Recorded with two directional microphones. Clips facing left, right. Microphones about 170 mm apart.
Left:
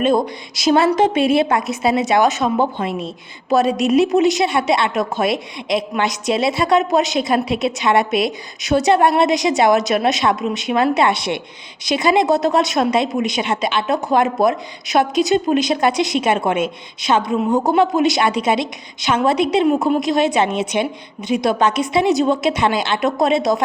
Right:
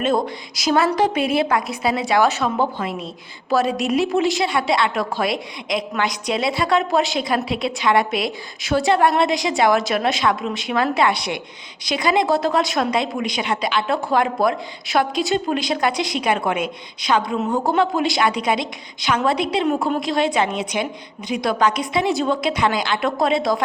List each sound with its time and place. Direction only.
0.0 s a woman's voice: 20° left (ahead or behind)